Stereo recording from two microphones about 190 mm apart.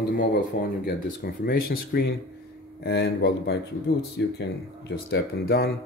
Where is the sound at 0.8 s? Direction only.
55° left (ahead or behind).